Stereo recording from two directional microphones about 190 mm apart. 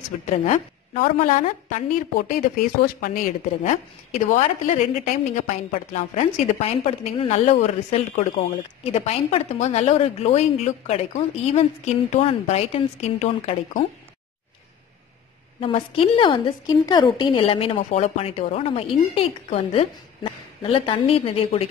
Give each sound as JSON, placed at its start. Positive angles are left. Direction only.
{"t": 0.1, "sound": "a woman's voice", "side_deg": 40}
{"t": 15.6, "sound": "a woman's voice", "side_deg": 25}